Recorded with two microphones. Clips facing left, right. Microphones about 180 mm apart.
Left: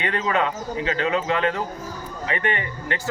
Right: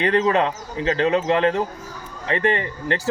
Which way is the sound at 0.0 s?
35° right (ahead or behind).